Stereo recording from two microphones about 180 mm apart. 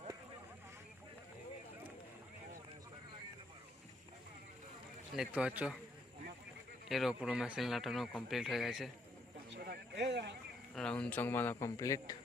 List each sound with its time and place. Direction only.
5.1 s a man's voice: 5° right (ahead or behind)
6.8 s speech: centre (ahead or behind)
9.6 s a sound: 60° right (ahead or behind)
10.8 s speech: 5° left (ahead or behind)